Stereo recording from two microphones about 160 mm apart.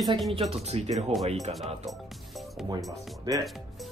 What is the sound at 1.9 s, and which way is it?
Music, centre (ahead or behind).